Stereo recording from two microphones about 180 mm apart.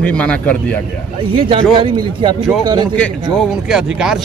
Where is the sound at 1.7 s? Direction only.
25° right (ahead or behind).